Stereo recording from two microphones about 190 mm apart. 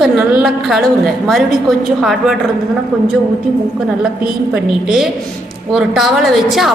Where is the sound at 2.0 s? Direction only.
Centre (ahead or behind).